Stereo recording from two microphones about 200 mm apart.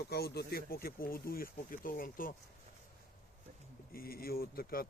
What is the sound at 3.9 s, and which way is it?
Speech, 50° left (ahead or behind).